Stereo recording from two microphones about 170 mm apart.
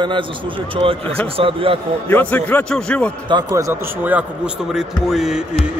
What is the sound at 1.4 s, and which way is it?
Speech, 30° right (ahead or behind).